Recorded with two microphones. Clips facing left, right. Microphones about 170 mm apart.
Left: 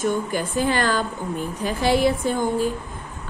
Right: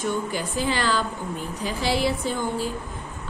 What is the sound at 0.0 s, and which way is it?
A woman's voice, 50° left (ahead or behind).